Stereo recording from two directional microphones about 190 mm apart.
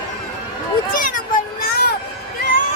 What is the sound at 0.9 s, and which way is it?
Children playing, 45° left (ahead or behind).